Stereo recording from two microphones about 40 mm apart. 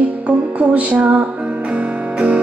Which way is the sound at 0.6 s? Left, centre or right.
Right.